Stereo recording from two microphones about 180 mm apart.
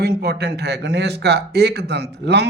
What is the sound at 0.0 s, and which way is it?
A man's voice, 65° right (ahead or behind).